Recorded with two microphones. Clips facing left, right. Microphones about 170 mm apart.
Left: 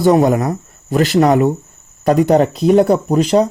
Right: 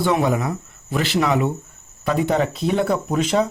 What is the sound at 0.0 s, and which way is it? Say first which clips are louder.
Speech: left 8 dB; 40° left (ahead or behind).